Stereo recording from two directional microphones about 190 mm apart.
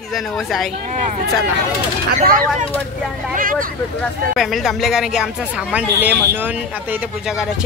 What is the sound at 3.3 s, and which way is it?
Speech, 45° right (ahead or behind).